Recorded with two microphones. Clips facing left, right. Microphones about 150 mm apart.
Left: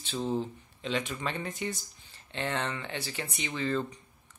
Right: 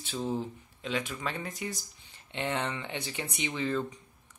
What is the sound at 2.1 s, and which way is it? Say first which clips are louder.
Speech: even; 15° right (ahead or behind).